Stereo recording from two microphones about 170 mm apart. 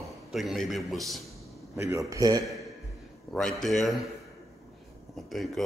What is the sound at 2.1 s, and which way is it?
Speech, 20° right (ahead or behind).